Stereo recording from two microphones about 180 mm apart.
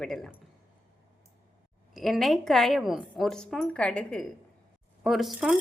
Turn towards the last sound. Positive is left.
turn(degrees=-5)  # may be behind; listen again after turning